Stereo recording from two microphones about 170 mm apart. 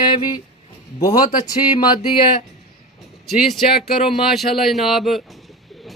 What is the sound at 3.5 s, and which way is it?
Speech, centre (ahead or behind).